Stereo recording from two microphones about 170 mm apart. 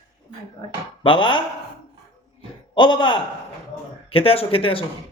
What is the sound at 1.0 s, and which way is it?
Speech, 30° left (ahead or behind).